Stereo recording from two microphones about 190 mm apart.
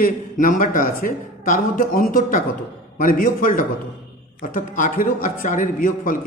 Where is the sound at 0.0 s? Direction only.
45° left (ahead or behind).